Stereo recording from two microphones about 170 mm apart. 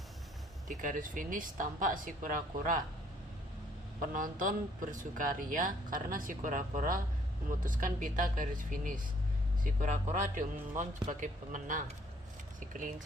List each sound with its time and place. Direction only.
0.8 s speech: 50° right (ahead or behind)
4.0 s speech: 50° right (ahead or behind)